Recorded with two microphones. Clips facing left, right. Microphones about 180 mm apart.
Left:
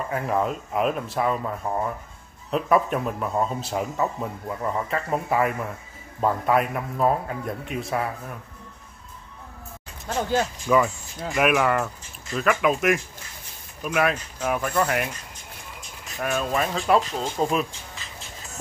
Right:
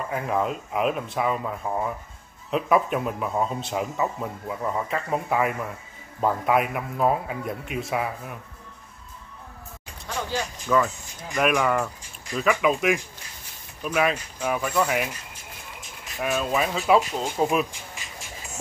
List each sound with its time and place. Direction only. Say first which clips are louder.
0.1 s speech: left 1 dB; centre (ahead or behind)
10.0 s speech: left 5 dB; 45° left (ahead or behind)
10.7 s speech: left 1 dB; 10° left (ahead or behind); by 18.6 s 10° right (ahead or behind)